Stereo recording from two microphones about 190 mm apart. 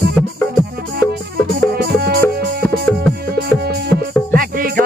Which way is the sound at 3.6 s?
55° right (ahead or behind).